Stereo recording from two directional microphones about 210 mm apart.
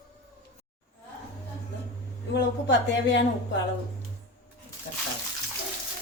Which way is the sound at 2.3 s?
55° left (ahead or behind).